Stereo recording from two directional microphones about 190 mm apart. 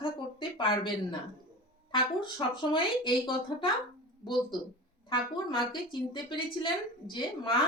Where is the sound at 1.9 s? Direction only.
25° left (ahead or behind).